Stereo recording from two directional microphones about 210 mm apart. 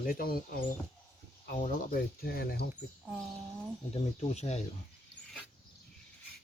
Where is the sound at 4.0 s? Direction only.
30° left (ahead or behind).